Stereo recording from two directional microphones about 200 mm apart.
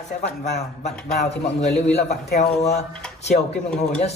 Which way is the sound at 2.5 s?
35° left (ahead or behind).